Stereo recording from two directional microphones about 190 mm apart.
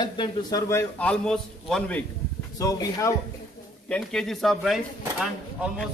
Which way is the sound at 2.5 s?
20° left (ahead or behind).